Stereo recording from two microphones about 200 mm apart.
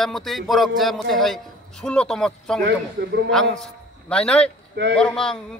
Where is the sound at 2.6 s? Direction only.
60° right (ahead or behind).